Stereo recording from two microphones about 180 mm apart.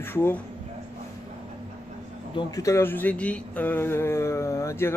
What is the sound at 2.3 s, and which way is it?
Speech, 20° left (ahead or behind).